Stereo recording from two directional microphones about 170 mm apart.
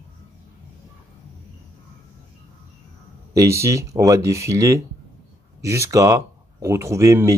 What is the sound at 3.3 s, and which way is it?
Speech, 15° right (ahead or behind).